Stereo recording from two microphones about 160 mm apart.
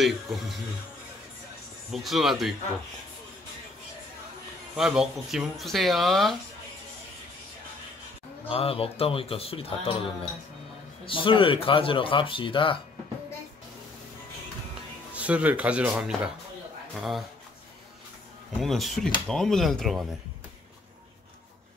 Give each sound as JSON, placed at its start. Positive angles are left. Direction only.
{"t": 0.0, "sound": "speech", "side_deg": 0}
{"t": 1.9, "sound": "speech", "side_deg": 0}
{"t": 4.7, "sound": "speech", "side_deg": -5}
{"t": 8.5, "sound": "speech", "side_deg": 35}
{"t": 15.1, "sound": "speech", "side_deg": -10}
{"t": 18.5, "sound": "speech", "side_deg": 0}